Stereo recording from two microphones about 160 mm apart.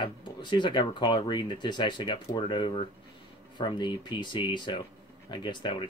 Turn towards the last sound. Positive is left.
turn(degrees=30)  # may be behind; listen again after turning